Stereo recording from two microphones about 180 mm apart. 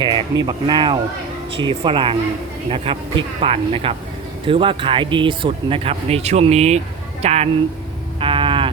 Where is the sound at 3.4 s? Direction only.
30° right (ahead or behind).